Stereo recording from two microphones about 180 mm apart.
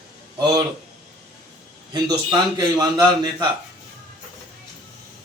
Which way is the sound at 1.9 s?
20° right (ahead or behind).